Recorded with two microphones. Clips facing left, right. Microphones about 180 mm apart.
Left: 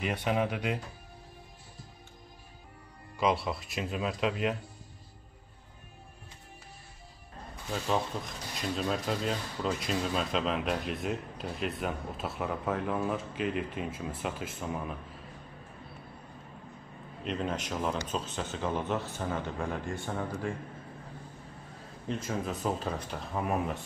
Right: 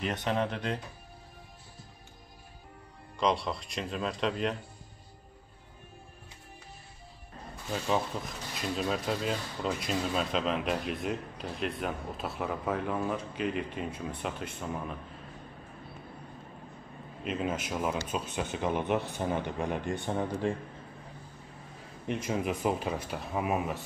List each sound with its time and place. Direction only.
0.0 s speech: 5° left (ahead or behind)
3.2 s speech: 5° left (ahead or behind)
7.7 s speech: centre (ahead or behind)
17.2 s a man's voice: 5° right (ahead or behind); by 20.5 s 20° right (ahead or behind)
22.0 s a man's voice: 15° right (ahead or behind)